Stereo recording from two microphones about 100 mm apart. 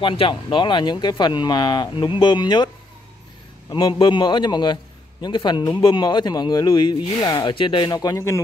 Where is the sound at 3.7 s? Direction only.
50° left (ahead or behind).